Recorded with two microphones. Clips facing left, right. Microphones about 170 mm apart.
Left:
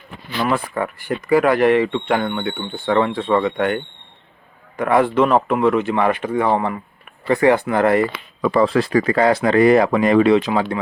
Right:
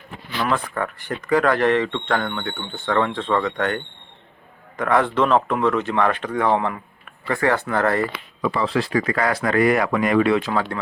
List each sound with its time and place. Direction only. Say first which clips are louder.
0.4 s speech: left 3 dB; 10° left (ahead or behind)
4.8 s speech: left 3 dB; 10° left (ahead or behind)
8.4 s speech: left 6 dB; 45° left (ahead or behind); by 10.8 s 15° left (ahead or behind)